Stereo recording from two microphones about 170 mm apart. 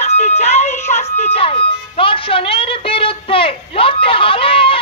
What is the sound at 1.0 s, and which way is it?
Music, 40° left (ahead or behind).